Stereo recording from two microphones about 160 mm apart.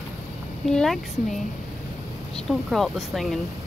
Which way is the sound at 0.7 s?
Centre (ahead or behind).